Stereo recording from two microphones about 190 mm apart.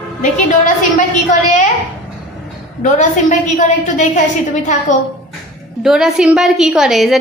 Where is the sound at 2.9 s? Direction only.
40° left (ahead or behind).